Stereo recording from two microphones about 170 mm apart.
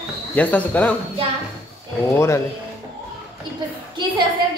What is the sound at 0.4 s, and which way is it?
Speech, 10° left (ahead or behind).